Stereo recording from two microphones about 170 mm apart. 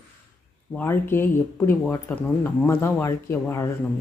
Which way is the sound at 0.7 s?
10° left (ahead or behind).